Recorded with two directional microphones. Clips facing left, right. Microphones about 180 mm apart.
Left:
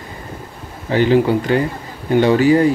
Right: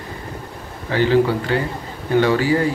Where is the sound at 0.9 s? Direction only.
15° left (ahead or behind).